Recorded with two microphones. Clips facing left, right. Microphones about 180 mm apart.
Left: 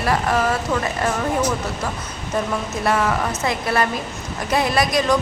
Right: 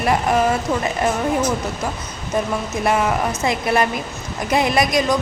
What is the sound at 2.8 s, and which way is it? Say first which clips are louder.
Music: right 1 dB; 15° right (ahead or behind).